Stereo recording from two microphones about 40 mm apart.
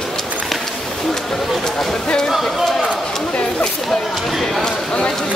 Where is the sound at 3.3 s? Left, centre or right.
Left.